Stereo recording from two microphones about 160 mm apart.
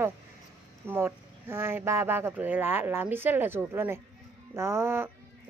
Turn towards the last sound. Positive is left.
turn(degrees=-15)  # may be behind; listen again after turning